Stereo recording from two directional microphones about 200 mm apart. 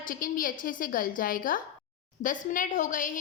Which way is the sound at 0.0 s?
45° left (ahead or behind).